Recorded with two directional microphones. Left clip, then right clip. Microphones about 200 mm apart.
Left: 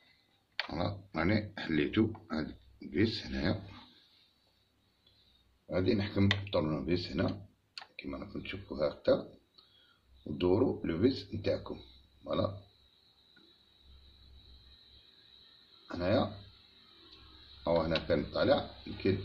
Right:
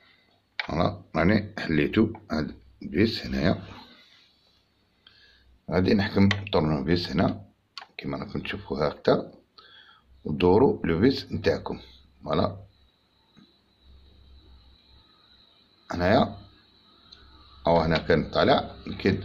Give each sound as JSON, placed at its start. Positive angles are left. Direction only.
{"t": 0.7, "sound": "speech", "side_deg": -45}
{"t": 5.7, "sound": "speech", "side_deg": -60}
{"t": 10.3, "sound": "speech", "side_deg": -60}
{"t": 12.2, "sound": "a sound", "side_deg": -55}
{"t": 15.9, "sound": "speech", "side_deg": -60}
{"t": 17.6, "sound": "speech", "side_deg": -60}